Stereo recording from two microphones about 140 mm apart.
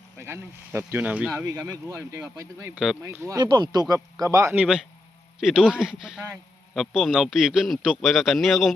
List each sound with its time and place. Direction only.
0.2 s speech: 20° right (ahead or behind)
1.3 s speech: 25° right (ahead or behind)
2.7 s a man's voice: 5° right (ahead or behind)
3.0 s speech: 20° right (ahead or behind)
5.4 s a man's voice: 5° right (ahead or behind)